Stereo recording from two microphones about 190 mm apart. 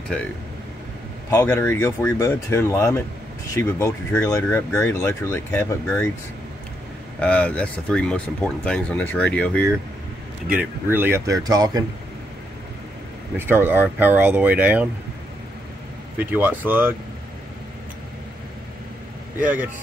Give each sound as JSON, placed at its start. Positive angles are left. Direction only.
{"t": 0.1, "sound": "speech", "side_deg": 5}
{"t": 1.3, "sound": "speech", "side_deg": 15}
{"t": 7.2, "sound": "speech", "side_deg": 5}
{"t": 10.5, "sound": "speech", "side_deg": -10}
{"t": 13.4, "sound": "speech", "side_deg": -10}
{"t": 16.2, "sound": "speech", "side_deg": -10}
{"t": 19.4, "sound": "speech", "side_deg": -10}